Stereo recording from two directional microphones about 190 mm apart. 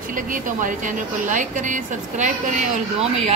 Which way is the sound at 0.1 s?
45° right (ahead or behind).